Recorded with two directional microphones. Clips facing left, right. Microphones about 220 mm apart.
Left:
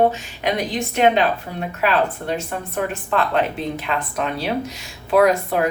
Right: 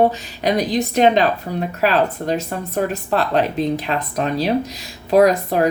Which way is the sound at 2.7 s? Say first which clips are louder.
Right 3 dB; 35° right (ahead or behind).